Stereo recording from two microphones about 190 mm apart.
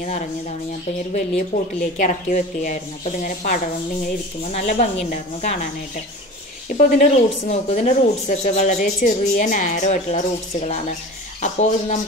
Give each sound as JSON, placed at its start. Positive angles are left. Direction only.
{"t": 1.5, "sound": "speech", "side_deg": 40}
{"t": 6.8, "sound": "speech", "side_deg": 40}